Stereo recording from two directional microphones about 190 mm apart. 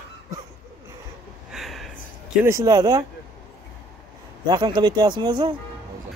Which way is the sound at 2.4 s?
15° right (ahead or behind).